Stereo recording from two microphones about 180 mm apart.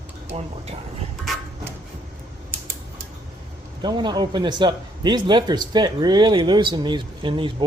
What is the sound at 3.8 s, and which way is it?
Speech, 25° right (ahead or behind).